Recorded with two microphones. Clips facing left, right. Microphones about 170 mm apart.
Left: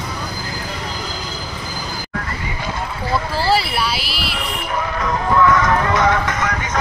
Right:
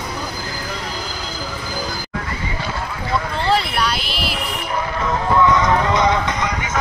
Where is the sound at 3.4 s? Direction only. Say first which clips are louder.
Even; 5° left (ahead or behind).